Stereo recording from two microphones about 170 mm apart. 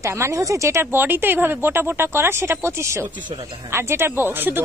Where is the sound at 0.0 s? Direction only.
20° right (ahead or behind).